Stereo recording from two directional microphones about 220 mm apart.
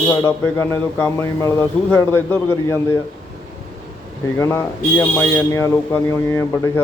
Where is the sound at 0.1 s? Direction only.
15° left (ahead or behind).